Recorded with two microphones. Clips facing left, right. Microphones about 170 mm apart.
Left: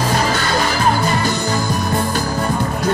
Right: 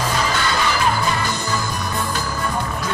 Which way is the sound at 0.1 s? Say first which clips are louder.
Left 3 dB; 45° left (ahead or behind).